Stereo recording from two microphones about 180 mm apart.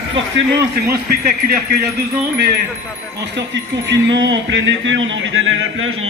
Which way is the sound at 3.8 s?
90° right.